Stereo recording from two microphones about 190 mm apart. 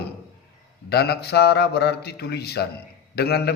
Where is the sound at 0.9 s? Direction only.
60° left (ahead or behind).